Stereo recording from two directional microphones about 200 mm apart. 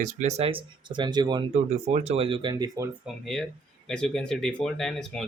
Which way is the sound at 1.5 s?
35° right (ahead or behind).